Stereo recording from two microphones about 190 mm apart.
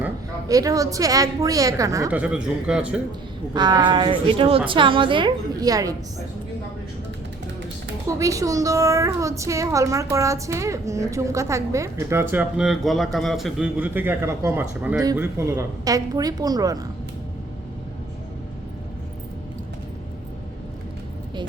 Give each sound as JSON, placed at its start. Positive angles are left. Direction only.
{"t": 0.0, "sound": "a woman's voice", "side_deg": -20}
{"t": 3.5, "sound": "a woman's voice", "side_deg": -20}
{"t": 8.2, "sound": "a woman's voice", "side_deg": -15}